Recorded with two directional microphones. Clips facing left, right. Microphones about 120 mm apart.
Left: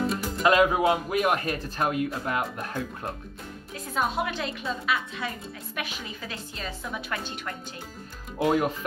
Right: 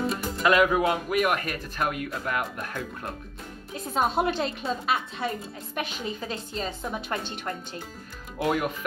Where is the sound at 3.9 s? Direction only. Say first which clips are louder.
Right 3 dB; 30° right (ahead or behind).